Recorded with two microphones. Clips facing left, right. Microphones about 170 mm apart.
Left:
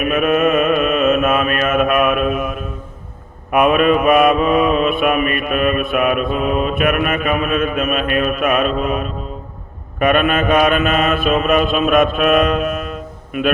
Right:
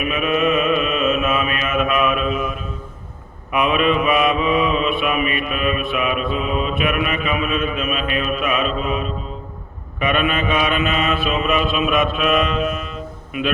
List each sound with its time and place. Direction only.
0.0 s mantra: 50° left (ahead or behind)